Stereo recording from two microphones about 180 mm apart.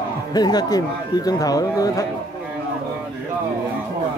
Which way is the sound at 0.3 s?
20° left (ahead or behind).